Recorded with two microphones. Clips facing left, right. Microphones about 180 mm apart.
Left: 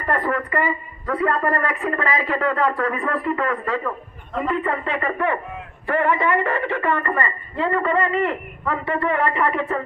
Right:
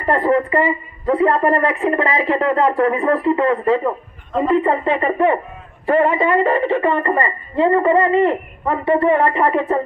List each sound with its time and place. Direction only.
0.0 s a woman's voice: 25° right (ahead or behind)